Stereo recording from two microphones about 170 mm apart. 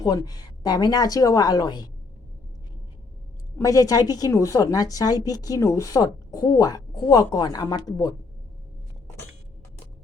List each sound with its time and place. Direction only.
0.0 s a woman's voice: 20° left (ahead or behind)
3.6 s a woman's voice: 20° left (ahead or behind)